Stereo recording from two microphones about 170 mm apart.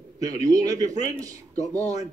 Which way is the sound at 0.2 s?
20° right (ahead or behind).